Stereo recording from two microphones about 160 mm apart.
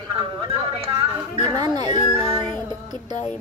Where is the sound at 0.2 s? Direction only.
35° right (ahead or behind).